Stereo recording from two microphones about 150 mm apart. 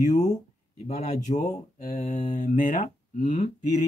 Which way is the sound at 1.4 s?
70° left (ahead or behind).